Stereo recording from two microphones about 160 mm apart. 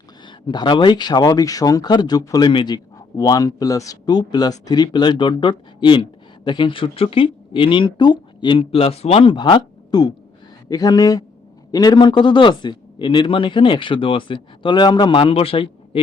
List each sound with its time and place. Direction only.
0.3 s a man's voice: 30° left (ahead or behind)